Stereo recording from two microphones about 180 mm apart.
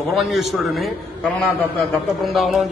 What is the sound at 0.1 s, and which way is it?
A man's voice, centre (ahead or behind).